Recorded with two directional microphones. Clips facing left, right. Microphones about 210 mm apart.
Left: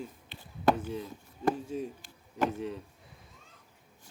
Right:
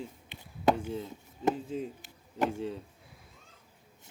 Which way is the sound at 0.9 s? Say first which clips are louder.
Right 1 dB; 25° right (ahead or behind).